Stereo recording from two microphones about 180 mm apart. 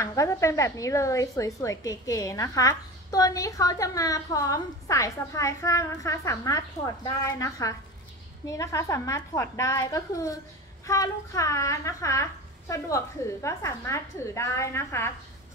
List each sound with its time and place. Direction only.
0.0 s a woman's voice: 15° left (ahead or behind)